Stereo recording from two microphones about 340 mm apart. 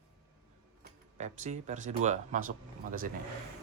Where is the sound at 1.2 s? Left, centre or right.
Centre.